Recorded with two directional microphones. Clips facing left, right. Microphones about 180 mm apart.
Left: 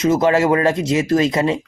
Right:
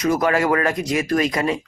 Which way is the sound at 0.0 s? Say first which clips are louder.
Left 4 dB; 25° left (ahead or behind).